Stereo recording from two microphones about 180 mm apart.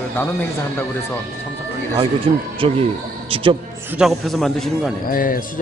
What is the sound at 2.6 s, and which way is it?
Speech, 30° right (ahead or behind).